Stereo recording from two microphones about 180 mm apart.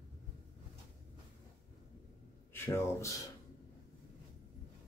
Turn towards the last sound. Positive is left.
turn(degrees=15)  # may be behind; listen again after turning